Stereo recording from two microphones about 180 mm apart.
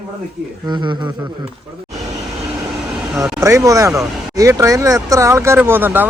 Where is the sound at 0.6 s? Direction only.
25° right (ahead or behind).